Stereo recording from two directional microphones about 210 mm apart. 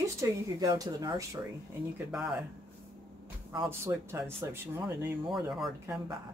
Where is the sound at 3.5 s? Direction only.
20° right (ahead or behind).